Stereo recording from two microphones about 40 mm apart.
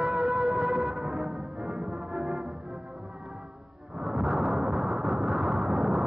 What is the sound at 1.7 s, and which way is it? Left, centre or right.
Music, centre.